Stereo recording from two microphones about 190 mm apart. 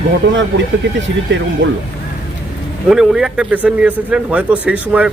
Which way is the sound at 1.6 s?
80° right.